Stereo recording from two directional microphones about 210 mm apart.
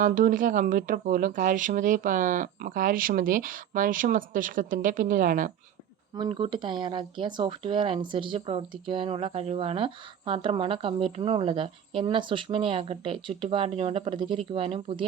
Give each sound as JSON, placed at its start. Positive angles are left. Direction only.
{"t": 0.0, "sound": "speech", "side_deg": -40}
{"t": 6.1, "sound": "speech", "side_deg": -25}